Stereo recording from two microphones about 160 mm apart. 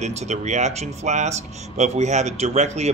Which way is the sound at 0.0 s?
45° right (ahead or behind).